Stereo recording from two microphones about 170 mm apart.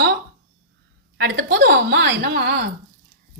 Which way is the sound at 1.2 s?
85° right.